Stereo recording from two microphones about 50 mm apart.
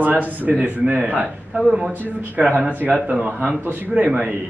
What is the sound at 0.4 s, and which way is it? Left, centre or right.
Speech, right.